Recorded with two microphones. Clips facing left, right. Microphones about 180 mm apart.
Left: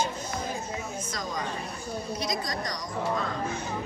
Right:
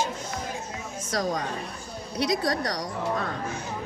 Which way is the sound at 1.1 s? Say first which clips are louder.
Right 9 dB; 70° right (ahead or behind).